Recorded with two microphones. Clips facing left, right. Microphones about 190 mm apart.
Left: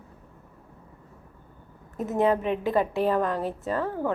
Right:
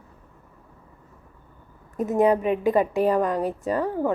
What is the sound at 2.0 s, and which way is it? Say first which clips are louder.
A woman's voice: right 4 dB; 15° right (ahead or behind).